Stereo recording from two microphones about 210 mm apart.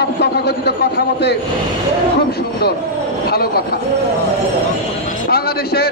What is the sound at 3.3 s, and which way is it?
Speech, 50° left (ahead or behind).